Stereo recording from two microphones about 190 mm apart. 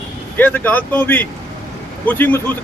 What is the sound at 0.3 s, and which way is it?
Speech, 10° left (ahead or behind).